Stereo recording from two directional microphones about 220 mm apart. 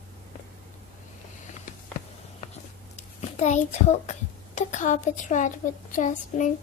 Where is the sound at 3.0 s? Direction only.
30° left (ahead or behind).